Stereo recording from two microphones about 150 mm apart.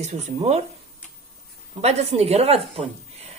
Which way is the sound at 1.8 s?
45° right (ahead or behind).